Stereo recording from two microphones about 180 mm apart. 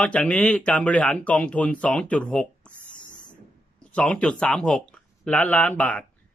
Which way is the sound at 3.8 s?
5° left (ahead or behind).